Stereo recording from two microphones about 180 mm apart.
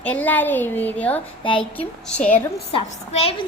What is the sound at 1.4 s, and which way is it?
Speech, 30° left (ahead or behind).